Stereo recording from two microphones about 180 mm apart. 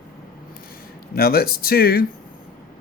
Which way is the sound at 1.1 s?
55° left (ahead or behind).